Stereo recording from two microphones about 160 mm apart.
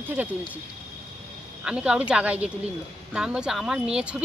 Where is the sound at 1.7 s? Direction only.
5° right (ahead or behind).